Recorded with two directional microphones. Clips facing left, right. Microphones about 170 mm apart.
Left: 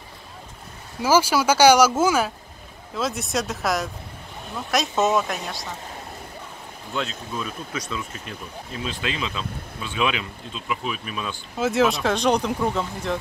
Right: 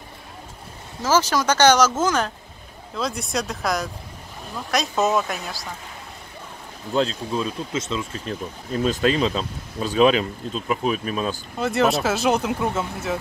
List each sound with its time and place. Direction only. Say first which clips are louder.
1.0 s speech: left 1 dB; 10° left (ahead or behind)
6.9 s speech: right 7 dB; 35° right (ahead or behind)
8.7 s speech: right 10 dB; 45° right (ahead or behind)
11.5 s speech: even; centre (ahead or behind)